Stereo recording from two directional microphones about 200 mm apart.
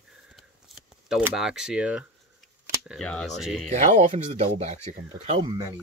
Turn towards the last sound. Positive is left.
turn(degrees=-30)  # may be behind; listen again after turning